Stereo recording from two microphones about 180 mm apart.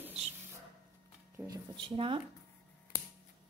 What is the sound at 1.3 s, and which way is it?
Speech, 20° right (ahead or behind).